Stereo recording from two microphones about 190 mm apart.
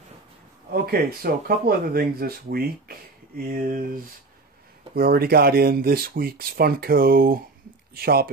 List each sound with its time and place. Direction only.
0.8 s speech: 55° right (ahead or behind)